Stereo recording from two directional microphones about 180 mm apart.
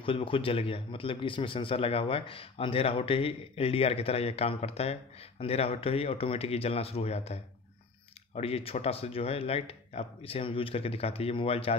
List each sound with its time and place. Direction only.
0.0 s a man's voice: 30° left (ahead or behind)
8.4 s a man's voice: 35° left (ahead or behind)